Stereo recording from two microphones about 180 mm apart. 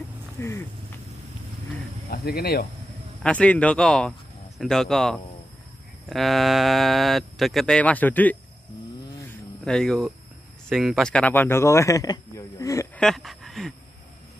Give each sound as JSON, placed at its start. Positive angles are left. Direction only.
{"t": 0.4, "sound": "speech", "side_deg": 15}
{"t": 2.0, "sound": "speech", "side_deg": 60}
{"t": 3.2, "sound": "speech", "side_deg": 5}
{"t": 9.7, "sound": "speech", "side_deg": 5}
{"t": 13.0, "sound": "speech", "side_deg": 0}